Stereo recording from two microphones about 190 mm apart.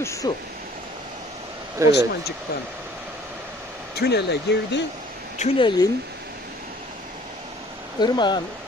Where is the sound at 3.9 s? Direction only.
60° left (ahead or behind).